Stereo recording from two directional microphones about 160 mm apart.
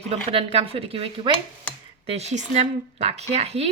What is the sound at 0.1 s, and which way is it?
A woman's voice, 35° right (ahead or behind).